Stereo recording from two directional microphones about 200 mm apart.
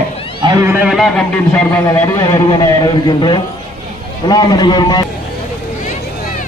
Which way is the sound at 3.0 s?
20° left (ahead or behind).